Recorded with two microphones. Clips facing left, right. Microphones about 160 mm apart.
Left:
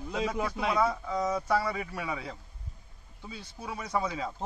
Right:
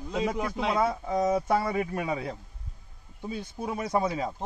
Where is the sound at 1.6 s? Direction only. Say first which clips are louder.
Right 4 dB; 50° right (ahead or behind).